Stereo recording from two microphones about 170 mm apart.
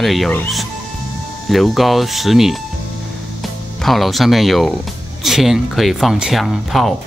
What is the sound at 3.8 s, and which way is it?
Speech, centre (ahead or behind).